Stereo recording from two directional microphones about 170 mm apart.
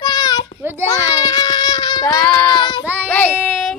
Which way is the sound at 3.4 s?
Centre (ahead or behind).